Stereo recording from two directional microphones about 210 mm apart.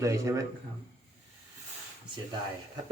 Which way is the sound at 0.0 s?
15° right (ahead or behind).